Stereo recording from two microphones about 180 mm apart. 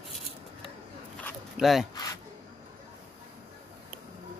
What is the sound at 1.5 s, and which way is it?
Dog, centre (ahead or behind).